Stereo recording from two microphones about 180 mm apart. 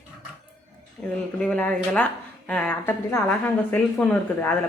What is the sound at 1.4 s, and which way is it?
Speech, 5° left (ahead or behind).